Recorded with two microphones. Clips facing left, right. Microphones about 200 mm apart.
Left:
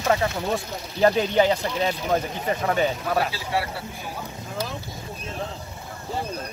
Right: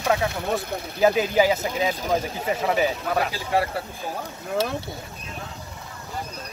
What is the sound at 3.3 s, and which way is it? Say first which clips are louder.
Speech: right 3 dB; 45° right (ahead or behind).